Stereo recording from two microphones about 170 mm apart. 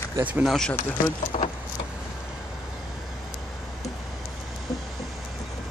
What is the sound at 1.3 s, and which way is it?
Vehicle, 40° left (ahead or behind).